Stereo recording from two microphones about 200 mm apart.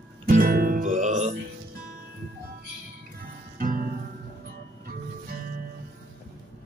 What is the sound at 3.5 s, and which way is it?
Music, 45° right (ahead or behind).